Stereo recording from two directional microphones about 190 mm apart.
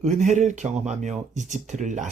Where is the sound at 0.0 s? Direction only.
40° right (ahead or behind).